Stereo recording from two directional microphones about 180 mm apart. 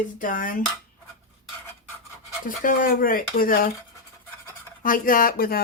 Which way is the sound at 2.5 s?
50° left (ahead or behind).